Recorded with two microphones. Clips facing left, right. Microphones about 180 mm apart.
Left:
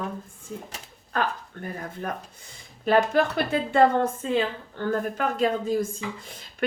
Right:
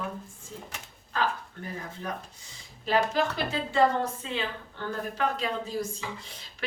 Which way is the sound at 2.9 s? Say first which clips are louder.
Left 5 dB; 55° left (ahead or behind).